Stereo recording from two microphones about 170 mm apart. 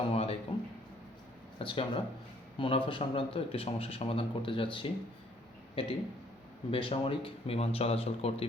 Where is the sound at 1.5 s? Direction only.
30° left (ahead or behind).